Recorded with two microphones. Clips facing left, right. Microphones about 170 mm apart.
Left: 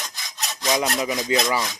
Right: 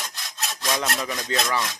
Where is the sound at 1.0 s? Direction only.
15° left (ahead or behind).